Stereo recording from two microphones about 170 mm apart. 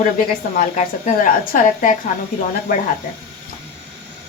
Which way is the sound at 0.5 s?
50° left (ahead or behind).